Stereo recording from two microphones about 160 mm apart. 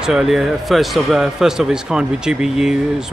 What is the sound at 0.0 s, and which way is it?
A man's voice, centre (ahead or behind).